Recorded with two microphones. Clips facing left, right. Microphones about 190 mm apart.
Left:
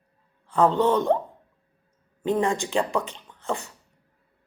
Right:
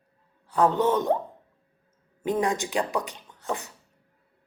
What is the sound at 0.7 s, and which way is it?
Speech, 20° right (ahead or behind).